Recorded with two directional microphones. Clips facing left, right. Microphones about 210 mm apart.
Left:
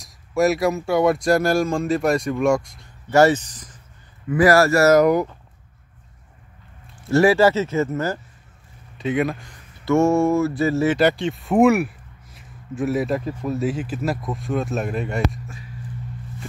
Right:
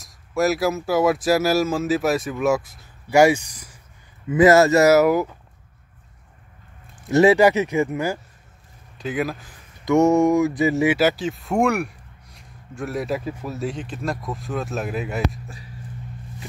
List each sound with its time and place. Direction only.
0.0 s speech: centre (ahead or behind)
4.3 s speech: 20° right (ahead or behind)
4.9 s speech: 5° right (ahead or behind)
7.1 s speech: 20° right (ahead or behind)
8.9 s speech: centre (ahead or behind)
9.8 s speech: 15° right (ahead or behind)
11.0 s speech: centre (ahead or behind)